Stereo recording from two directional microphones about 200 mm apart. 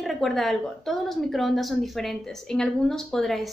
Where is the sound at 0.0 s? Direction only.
Centre (ahead or behind).